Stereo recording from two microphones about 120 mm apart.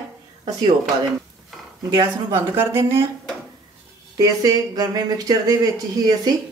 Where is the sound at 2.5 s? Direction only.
20° right (ahead or behind).